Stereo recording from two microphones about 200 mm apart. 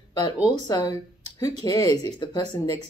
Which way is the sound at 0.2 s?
20° left (ahead or behind).